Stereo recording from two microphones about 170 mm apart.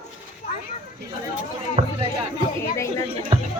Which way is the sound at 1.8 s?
40° right (ahead or behind).